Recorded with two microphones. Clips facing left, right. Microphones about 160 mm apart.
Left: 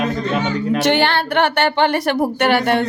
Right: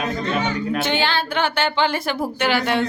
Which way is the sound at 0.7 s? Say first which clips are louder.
Left 7 dB; 75° left (ahead or behind).